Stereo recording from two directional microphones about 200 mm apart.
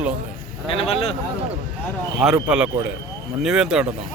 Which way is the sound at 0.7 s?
30° left (ahead or behind).